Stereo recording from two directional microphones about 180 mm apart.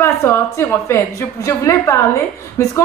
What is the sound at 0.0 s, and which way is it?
A woman's voice, 15° left (ahead or behind).